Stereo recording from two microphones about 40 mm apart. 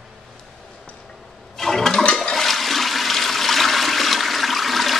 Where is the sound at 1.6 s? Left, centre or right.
Centre.